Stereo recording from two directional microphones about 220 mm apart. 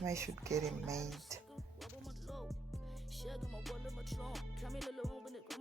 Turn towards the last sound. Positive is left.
turn(degrees=0)  # may be behind; listen again after turning